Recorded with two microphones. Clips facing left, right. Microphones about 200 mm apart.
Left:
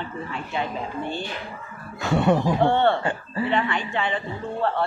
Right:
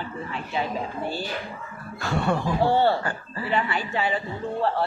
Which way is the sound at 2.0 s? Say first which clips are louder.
Left 5 dB; 20° left (ahead or behind).